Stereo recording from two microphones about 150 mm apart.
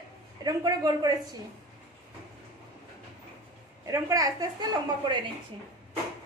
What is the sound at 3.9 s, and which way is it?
Speech, 20° right (ahead or behind).